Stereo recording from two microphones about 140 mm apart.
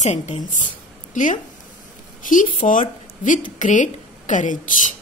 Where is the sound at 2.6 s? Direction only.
70° left (ahead or behind).